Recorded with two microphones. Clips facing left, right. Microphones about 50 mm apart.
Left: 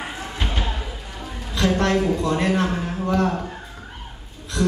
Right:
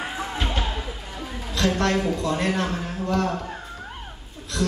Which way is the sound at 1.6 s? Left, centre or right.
Centre.